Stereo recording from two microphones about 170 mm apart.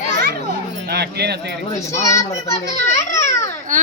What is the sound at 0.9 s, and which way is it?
Speech, 75° right (ahead or behind).